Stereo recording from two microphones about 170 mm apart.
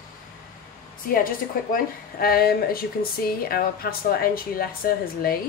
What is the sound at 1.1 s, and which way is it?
A woman's voice, 55° left (ahead or behind).